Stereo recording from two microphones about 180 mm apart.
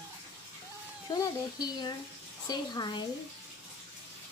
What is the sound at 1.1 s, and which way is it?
Speech, 20° left (ahead or behind).